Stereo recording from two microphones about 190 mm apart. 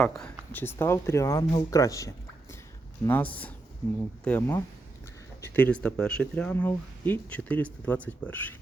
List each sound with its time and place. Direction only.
0.0 s speech: 5° left (ahead or behind)